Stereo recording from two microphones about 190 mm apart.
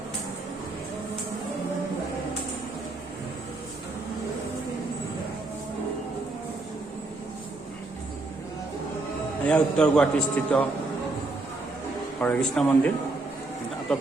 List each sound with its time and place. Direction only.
9.5 s a man's voice: 5° left (ahead or behind)
12.2 s speech: 5° left (ahead or behind)